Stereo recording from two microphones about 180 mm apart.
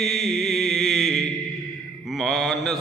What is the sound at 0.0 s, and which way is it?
Mantra, centre (ahead or behind).